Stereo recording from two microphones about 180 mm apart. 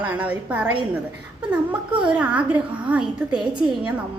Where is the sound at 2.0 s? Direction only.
10° right (ahead or behind).